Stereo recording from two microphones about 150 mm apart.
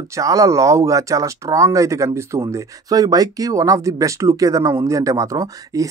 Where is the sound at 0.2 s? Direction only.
20° right (ahead or behind).